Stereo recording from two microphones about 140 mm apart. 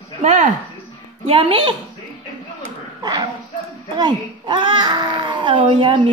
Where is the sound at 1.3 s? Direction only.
40° right (ahead or behind).